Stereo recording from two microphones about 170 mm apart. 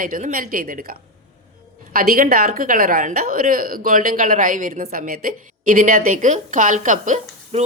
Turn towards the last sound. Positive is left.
turn(degrees=-45)  # may be behind; listen again after turning